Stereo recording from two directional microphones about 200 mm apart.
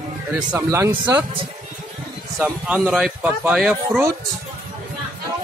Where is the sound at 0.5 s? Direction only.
15° right (ahead or behind).